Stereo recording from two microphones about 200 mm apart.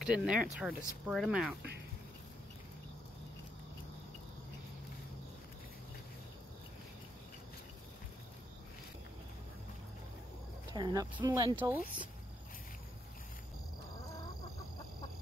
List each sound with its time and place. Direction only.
0.0 s speech: 5° right (ahead or behind)
10.7 s speech: 20° right (ahead or behind)
11.5 s speech: 10° right (ahead or behind)